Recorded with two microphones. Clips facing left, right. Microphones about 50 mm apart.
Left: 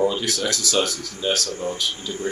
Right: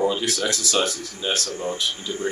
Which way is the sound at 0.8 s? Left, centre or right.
Right.